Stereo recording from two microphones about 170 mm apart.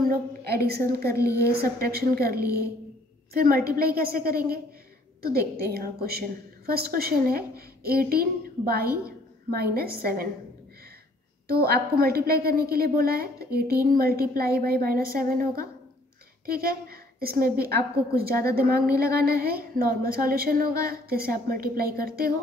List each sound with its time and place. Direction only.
0.1 s a woman's voice: 65° right (ahead or behind)
1.1 s speech: 15° left (ahead or behind)
1.9 s a woman's voice: 65° right (ahead or behind)
11.4 s a woman's voice: 60° right (ahead or behind)